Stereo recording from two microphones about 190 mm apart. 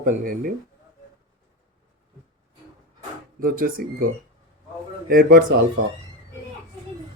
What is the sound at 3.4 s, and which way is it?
Speech, 45° right (ahead or behind).